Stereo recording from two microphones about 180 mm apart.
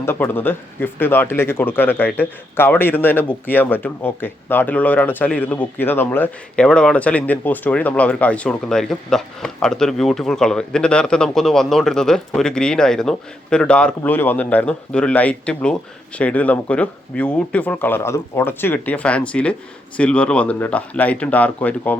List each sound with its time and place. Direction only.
0.0 s speech: 10° left (ahead or behind)